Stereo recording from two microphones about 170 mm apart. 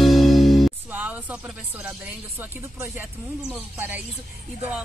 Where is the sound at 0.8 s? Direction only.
10° right (ahead or behind).